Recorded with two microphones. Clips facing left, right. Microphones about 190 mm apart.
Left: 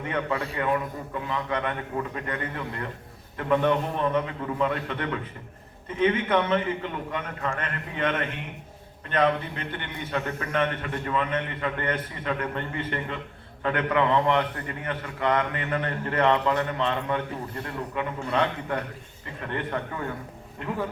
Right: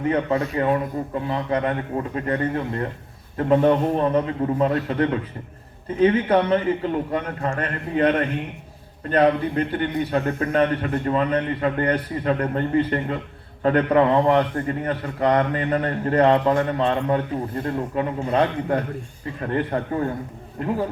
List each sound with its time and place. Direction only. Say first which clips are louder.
0.1 s a man's voice: right 6 dB; 35° right (ahead or behind)